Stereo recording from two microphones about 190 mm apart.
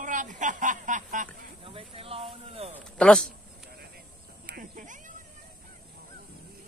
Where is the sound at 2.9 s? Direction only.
5° left (ahead or behind).